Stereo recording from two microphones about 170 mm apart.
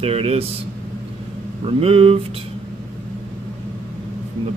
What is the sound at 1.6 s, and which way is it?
Speech, 35° right (ahead or behind).